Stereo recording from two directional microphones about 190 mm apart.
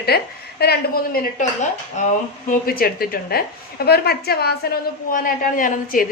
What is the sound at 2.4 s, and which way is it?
A woman's voice, 50° left (ahead or behind).